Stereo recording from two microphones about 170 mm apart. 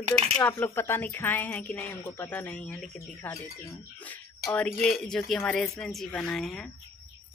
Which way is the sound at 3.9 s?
10° left (ahead or behind).